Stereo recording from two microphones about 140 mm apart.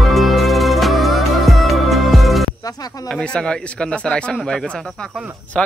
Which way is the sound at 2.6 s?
25° left (ahead or behind).